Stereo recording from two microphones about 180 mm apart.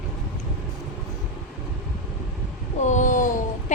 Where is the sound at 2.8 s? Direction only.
45° left (ahead or behind).